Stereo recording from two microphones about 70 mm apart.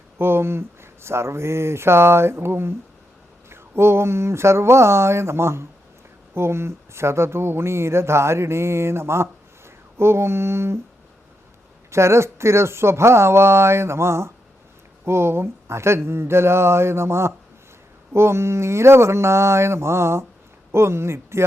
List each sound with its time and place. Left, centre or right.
0.2 s speech: right
11.9 s speech: right